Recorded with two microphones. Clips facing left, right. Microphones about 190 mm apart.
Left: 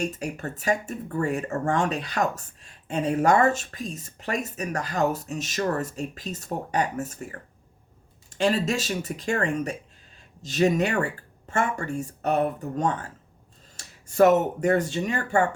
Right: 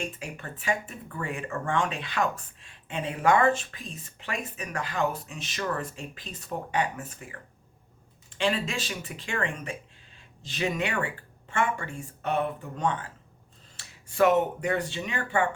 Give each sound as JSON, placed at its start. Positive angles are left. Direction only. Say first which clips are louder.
{"t": 0.0, "sound": "speech", "louder": "left 7 dB", "side_deg": 40}